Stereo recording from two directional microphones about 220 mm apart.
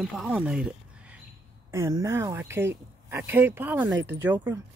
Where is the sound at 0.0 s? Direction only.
5° right (ahead or behind).